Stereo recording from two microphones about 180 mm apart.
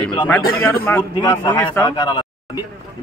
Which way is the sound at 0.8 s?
15° left (ahead or behind).